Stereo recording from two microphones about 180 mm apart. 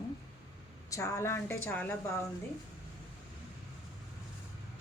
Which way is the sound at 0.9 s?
15° left (ahead or behind).